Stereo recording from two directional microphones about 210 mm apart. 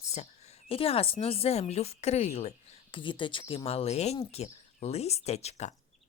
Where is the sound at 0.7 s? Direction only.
25° left (ahead or behind).